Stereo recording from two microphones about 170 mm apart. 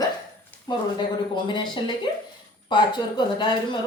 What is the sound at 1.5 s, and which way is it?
A woman's voice, 25° left (ahead or behind).